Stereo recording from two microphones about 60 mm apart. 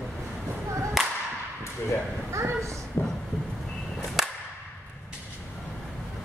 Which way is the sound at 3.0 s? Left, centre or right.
Left.